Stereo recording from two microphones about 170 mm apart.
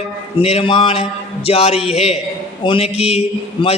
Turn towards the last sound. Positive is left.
turn(degrees=35)  # may be behind; listen again after turning